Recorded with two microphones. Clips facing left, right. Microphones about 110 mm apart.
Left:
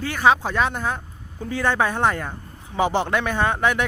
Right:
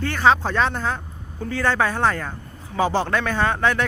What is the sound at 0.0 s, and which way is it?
Speech, 10° left (ahead or behind).